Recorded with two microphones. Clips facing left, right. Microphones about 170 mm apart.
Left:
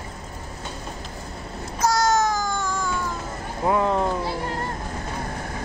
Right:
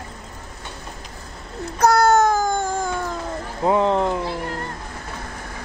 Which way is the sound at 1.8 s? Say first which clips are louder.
Right 5 dB; 60° right (ahead or behind).